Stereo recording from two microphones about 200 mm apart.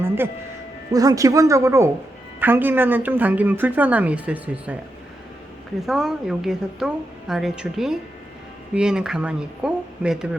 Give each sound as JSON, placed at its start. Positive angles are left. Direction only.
{"t": 0.9, "sound": "a woman's voice", "side_deg": -15}
{"t": 5.8, "sound": "a woman's voice", "side_deg": 0}